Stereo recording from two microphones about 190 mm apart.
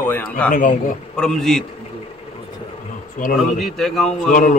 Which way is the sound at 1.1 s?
5° left (ahead or behind).